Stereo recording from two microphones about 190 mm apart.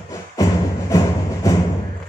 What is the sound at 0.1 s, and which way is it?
Music, 15° left (ahead or behind).